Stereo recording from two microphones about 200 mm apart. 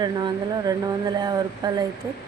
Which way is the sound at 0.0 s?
20° right (ahead or behind).